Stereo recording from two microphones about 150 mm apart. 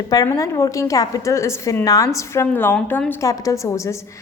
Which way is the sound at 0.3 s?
20° left (ahead or behind).